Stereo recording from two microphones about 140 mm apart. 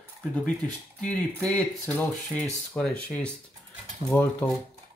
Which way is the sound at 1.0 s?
10° left (ahead or behind).